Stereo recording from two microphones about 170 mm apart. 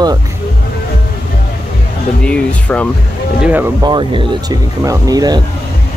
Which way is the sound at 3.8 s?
25° right (ahead or behind).